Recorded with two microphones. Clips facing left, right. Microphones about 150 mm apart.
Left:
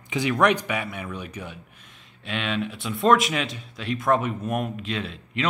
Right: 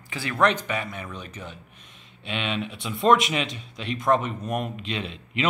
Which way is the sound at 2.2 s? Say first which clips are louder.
Left 1 dB; centre (ahead or behind).